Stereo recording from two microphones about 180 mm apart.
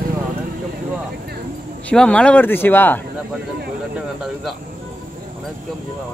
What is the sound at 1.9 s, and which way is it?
Speech, 5° left (ahead or behind).